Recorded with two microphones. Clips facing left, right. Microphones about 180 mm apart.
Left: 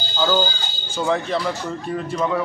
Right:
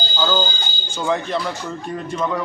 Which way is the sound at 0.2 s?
5° left (ahead or behind).